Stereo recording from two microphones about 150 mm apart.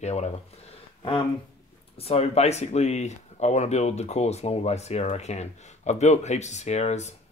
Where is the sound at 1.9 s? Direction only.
40° left (ahead or behind).